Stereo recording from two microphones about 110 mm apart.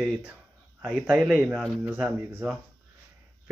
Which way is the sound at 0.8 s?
5° left (ahead or behind).